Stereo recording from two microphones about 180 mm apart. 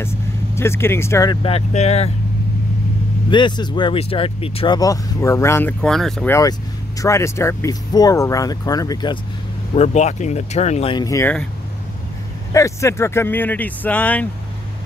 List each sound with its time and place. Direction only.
0.6 s speech: 15° left (ahead or behind); by 2.1 s 35° left (ahead or behind)
3.3 s speech: 25° left (ahead or behind)
4.7 s speech: 20° left (ahead or behind); by 6.2 s centre (ahead or behind)
6.2 s speech: 15° left (ahead or behind)
9.8 s speech: 40° left (ahead or behind); by 11.3 s 15° left (ahead or behind)
12.5 s speech: 15° left (ahead or behind)